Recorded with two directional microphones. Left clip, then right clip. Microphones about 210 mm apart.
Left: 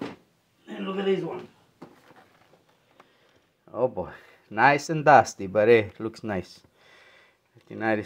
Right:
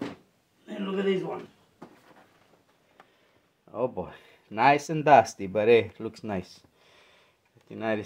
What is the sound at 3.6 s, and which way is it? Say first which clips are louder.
Speech: left 4 dB; 25° left (ahead or behind).